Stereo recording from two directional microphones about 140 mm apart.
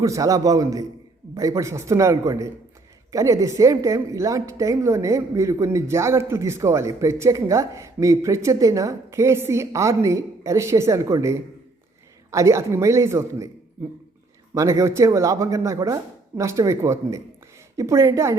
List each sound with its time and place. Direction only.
0.0 s a woman's voice: 25° right (ahead or behind)
14.5 s a woman's voice: 20° right (ahead or behind)